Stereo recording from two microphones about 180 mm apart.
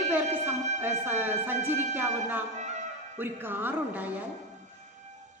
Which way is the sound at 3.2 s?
10° right (ahead or behind).